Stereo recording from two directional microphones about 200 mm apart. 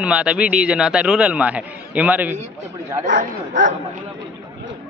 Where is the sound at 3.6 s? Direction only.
65° right (ahead or behind).